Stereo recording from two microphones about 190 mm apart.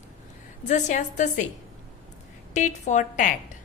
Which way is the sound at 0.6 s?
40° left (ahead or behind).